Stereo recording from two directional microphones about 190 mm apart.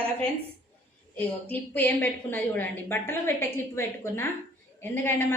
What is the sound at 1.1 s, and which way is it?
A woman's voice, 10° left (ahead or behind).